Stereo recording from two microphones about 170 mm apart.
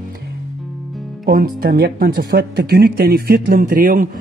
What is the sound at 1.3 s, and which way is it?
Speech, 60° right (ahead or behind).